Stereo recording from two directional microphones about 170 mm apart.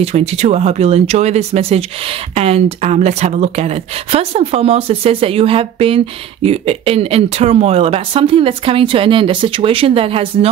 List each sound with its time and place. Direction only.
0.0 s speech: 40° right (ahead or behind)